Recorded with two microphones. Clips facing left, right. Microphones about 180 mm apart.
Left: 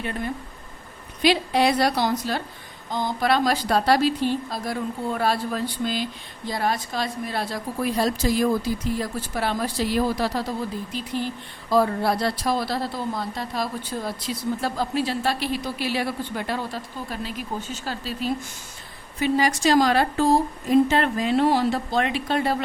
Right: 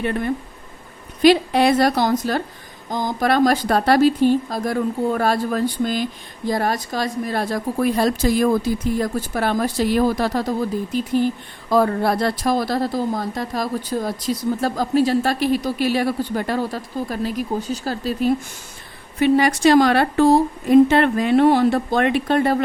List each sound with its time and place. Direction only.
1.2 s speech: 50° right (ahead or behind)
19.2 s a woman's voice: 60° right (ahead or behind)